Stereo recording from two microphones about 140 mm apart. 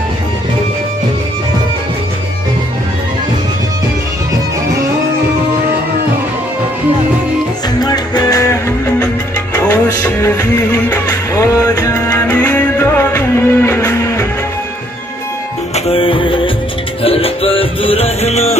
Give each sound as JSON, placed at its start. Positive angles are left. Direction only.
{"t": 7.8, "sound": "music", "side_deg": 30}
{"t": 12.4, "sound": "music", "side_deg": 10}
{"t": 15.7, "sound": "music", "side_deg": 40}